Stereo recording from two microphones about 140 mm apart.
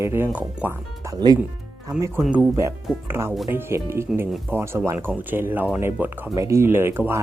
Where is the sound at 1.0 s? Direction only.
25° right (ahead or behind).